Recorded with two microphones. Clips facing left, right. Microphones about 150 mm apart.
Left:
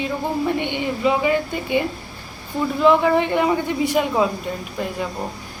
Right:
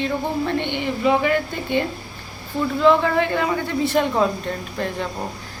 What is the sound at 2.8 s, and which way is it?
A woman's voice, 15° left (ahead or behind).